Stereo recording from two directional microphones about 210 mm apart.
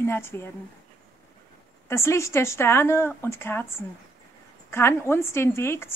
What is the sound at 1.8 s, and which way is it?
A woman's voice, 10° left (ahead or behind).